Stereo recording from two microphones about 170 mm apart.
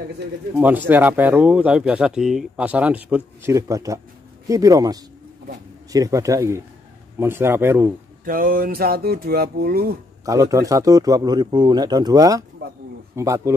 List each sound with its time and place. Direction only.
0.6 s speech: 10° right (ahead or behind)
3.4 s a man's voice: 20° right (ahead or behind)
8.3 s speech: 55° right (ahead or behind)
10.2 s a man's voice: 20° right (ahead or behind)